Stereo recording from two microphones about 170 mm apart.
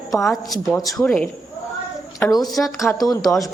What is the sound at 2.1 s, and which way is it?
A woman's voice, 20° left (ahead or behind).